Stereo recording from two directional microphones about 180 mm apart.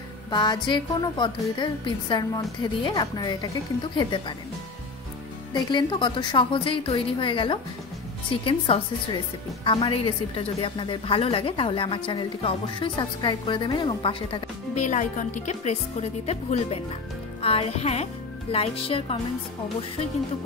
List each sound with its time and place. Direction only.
0.3 s a woman's voice: 25° left (ahead or behind)
5.5 s a woman's voice: 25° left (ahead or behind)
14.8 s speech: 45° left (ahead or behind)